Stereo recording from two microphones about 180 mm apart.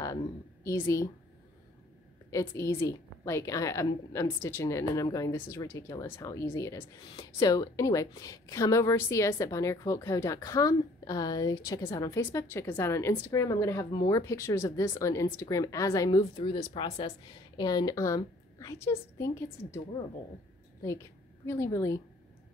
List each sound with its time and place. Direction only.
0.7 s a woman's voice: 15° left (ahead or behind)
2.3 s a woman's voice: 15° left (ahead or behind)
20.8 s a woman's voice: 15° left (ahead or behind)